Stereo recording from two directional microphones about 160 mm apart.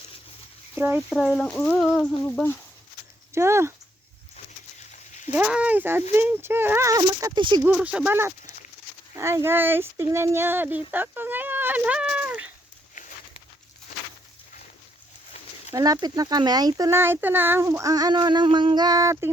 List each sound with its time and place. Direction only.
0.8 s speech: 15° right (ahead or behind)
1.1 s speech: centre (ahead or behind)
3.3 s speech: 15° right (ahead or behind)
5.3 s speech: 10° right (ahead or behind)
7.6 s speech: 10° right (ahead or behind)
15.7 s speech: 25° right (ahead or behind)